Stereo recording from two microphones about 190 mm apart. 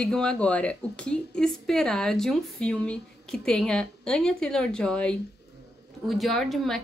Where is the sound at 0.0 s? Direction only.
5° left (ahead or behind).